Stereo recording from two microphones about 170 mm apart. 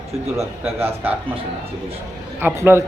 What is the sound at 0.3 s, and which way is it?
Speech, 15° right (ahead or behind).